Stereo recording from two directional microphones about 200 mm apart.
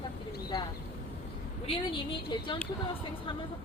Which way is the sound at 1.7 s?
25° left (ahead or behind).